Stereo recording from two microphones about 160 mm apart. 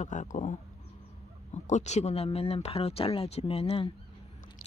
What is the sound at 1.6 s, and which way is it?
Speech, 45° left (ahead or behind).